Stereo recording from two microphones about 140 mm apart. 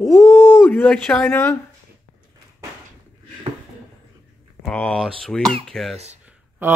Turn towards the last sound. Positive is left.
turn(degrees=-50)  # may be behind; listen again after turning